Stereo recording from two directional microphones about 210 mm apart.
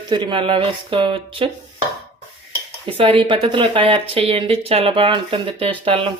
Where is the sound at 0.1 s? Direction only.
25° right (ahead or behind).